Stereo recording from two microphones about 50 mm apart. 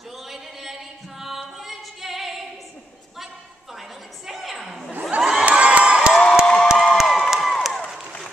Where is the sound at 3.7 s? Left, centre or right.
Centre.